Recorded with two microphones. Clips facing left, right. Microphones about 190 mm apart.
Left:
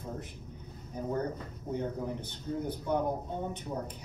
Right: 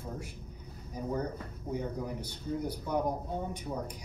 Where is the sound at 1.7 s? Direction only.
10° right (ahead or behind).